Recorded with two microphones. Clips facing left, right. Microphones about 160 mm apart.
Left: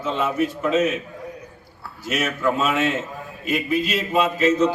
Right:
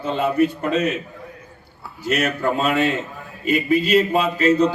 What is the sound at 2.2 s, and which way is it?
A man's voice, 65° right (ahead or behind).